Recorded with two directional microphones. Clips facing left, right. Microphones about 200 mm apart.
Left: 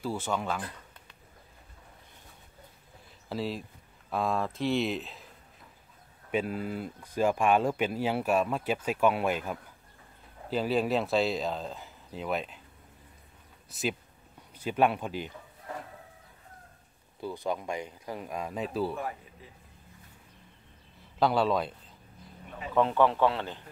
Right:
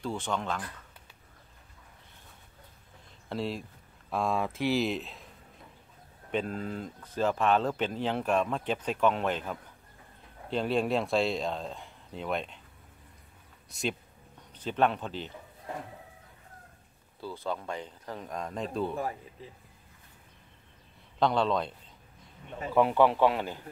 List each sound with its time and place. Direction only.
0.0 s speech: 5° left (ahead or behind)
3.3 s speech: centre (ahead or behind)
6.3 s speech: 5° left (ahead or behind)
13.7 s speech: centre (ahead or behind)
17.2 s speech: 15° left (ahead or behind)
21.2 s speech: 5° left (ahead or behind)
22.8 s speech: 15° right (ahead or behind)